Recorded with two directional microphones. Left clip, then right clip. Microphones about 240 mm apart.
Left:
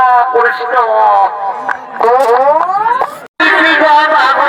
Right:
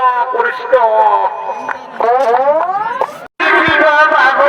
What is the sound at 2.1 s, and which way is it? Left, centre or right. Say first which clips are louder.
Speech: left 3 dB; left.